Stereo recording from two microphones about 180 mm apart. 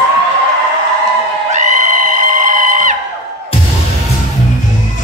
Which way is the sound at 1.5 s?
45° right (ahead or behind).